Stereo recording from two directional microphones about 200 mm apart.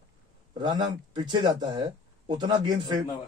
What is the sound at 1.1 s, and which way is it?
Speech, 20° right (ahead or behind).